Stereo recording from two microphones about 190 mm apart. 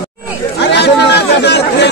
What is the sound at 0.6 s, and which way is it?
Chatter, 65° left (ahead or behind).